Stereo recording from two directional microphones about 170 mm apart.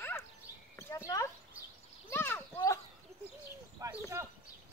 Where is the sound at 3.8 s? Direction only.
20° right (ahead or behind).